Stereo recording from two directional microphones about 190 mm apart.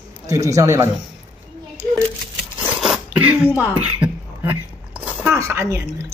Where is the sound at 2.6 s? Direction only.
Centre (ahead or behind).